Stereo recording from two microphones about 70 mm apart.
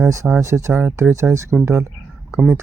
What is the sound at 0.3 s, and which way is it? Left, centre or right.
Speech, right.